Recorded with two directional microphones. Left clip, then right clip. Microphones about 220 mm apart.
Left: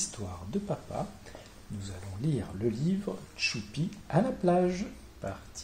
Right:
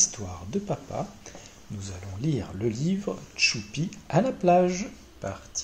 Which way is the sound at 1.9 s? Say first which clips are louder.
Right 5 dB; 15° right (ahead or behind).